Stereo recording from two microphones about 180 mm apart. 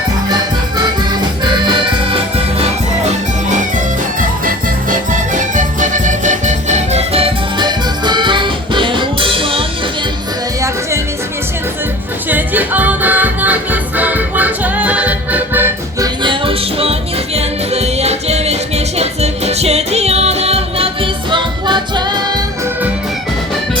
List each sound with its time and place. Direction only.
4.2 s music: 50° right (ahead or behind); by 9.6 s 30° right (ahead or behind)
12.3 s music: 10° right (ahead or behind)
16.2 s music: 30° right (ahead or behind)